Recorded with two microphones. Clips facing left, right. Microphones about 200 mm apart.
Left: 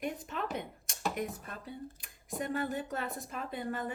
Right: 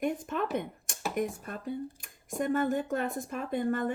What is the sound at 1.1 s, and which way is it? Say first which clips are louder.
Speech: right 6 dB; 50° right (ahead or behind).